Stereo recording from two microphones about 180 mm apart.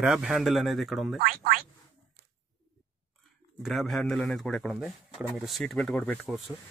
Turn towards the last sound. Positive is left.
turn(degrees=0)  # may be behind; listen again after turning